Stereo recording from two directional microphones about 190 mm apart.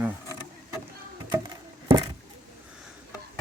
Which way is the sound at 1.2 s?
25° right (ahead or behind).